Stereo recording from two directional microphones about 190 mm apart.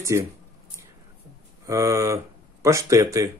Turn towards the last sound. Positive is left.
turn(degrees=-15)  # may be behind; listen again after turning